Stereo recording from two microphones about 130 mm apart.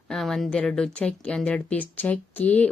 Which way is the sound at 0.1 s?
Centre (ahead or behind).